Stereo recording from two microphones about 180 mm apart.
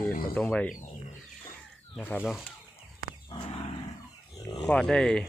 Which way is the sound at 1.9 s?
10° left (ahead or behind).